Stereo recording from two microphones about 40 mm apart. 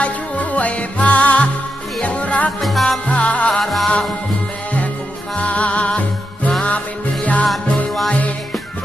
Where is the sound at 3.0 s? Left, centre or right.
Left.